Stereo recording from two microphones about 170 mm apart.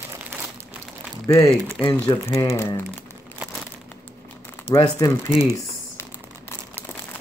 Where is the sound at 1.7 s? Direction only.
5° left (ahead or behind).